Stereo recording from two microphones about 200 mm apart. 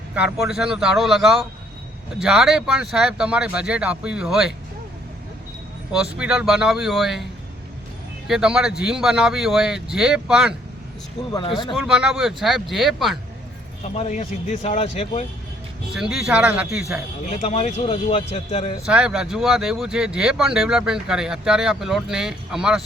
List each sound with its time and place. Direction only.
0.1 s speech: 5° right (ahead or behind)
6.1 s speech: 5° right (ahead or behind)
8.3 s speech: 5° right (ahead or behind)
11.3 s speech: 20° left (ahead or behind)
11.7 s speech: 5° right (ahead or behind)
13.9 s speech: 35° left (ahead or behind)
15.9 s speech: centre (ahead or behind)
17.2 s speech: 35° left (ahead or behind)
18.9 s speech: 5° right (ahead or behind)